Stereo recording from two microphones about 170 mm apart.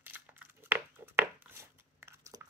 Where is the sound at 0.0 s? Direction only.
10° right (ahead or behind).